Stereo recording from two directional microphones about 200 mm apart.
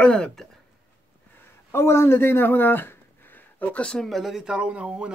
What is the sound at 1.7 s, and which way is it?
Speech, 10° left (ahead or behind).